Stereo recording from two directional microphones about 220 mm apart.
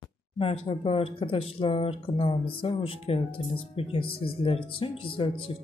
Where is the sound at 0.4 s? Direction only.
25° left (ahead or behind).